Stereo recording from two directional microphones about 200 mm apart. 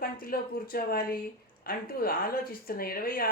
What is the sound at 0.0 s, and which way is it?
Speech, 45° left (ahead or behind).